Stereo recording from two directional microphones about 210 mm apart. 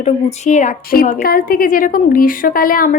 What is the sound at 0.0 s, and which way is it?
A woman's voice, 35° left (ahead or behind).